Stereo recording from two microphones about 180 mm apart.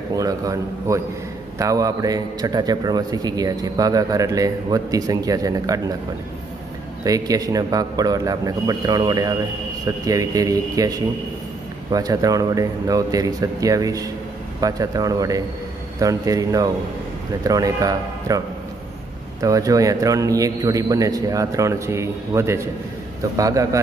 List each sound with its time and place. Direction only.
0.1 s a man's voice: 20° right (ahead or behind)
7.1 s a man's voice: 20° right (ahead or behind)
19.4 s a man's voice: 20° right (ahead or behind)